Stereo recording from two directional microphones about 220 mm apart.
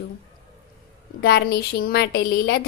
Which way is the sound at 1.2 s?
45° left (ahead or behind).